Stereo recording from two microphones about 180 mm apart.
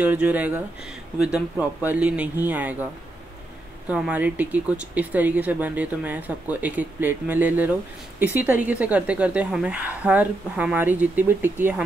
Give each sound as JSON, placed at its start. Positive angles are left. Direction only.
{"t": 0.0, "sound": "speech", "side_deg": -10}